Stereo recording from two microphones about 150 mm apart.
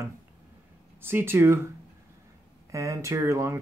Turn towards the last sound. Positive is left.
turn(degrees=-20)  # may be behind; listen again after turning